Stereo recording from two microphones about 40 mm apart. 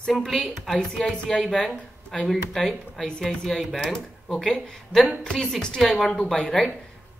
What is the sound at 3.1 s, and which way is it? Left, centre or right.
Speech, centre.